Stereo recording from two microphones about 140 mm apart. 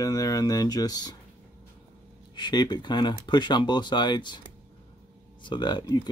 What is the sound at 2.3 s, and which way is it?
Speech, 30° left (ahead or behind).